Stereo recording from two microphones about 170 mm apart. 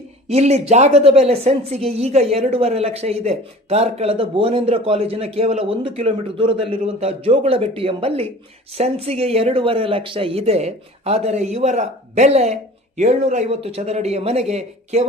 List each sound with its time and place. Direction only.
0.3 s a woman's voice: 40° right (ahead or behind)